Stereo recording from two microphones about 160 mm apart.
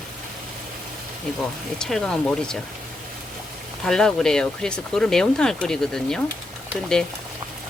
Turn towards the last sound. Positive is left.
turn(degrees=5)  # may be behind; listen again after turning